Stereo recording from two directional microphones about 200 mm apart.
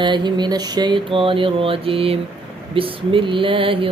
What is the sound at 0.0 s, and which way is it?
Speech, 20° right (ahead or behind).